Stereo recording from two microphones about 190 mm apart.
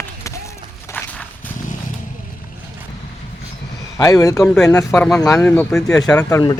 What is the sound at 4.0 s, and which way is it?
Speech, 15° left (ahead or behind).